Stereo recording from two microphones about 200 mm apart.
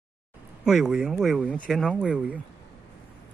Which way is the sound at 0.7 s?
Centre (ahead or behind).